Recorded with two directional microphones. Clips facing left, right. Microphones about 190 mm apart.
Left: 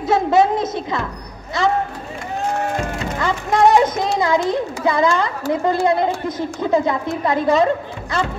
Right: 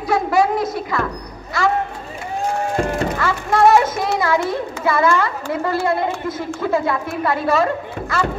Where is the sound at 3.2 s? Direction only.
20° left (ahead or behind).